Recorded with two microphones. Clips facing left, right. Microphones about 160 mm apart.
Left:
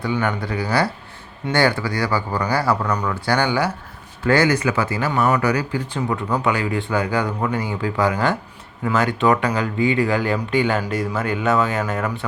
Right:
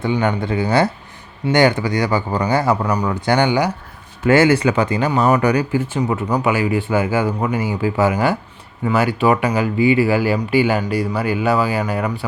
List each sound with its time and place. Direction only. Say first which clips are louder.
0.0 s speech: right 4 dB; 20° right (ahead or behind)
6.5 s speech: right 5 dB; 5° right (ahead or behind)